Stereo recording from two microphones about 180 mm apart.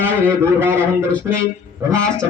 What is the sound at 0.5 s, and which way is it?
Speech, 15° right (ahead or behind).